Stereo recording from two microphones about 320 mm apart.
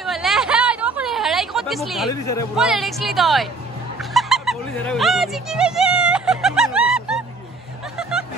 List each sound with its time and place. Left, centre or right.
0.0 s a sound: centre
2.5 s speech: centre
4.0 s music: centre